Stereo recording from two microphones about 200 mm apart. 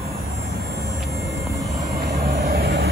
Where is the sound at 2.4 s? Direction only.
55° right (ahead or behind).